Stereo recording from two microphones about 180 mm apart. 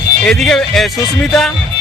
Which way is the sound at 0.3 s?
5° left (ahead or behind).